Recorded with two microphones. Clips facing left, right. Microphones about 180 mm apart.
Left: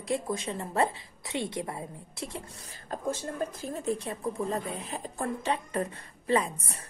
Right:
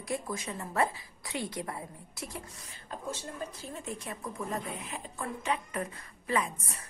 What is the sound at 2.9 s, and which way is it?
A woman's voice, 45° left (ahead or behind).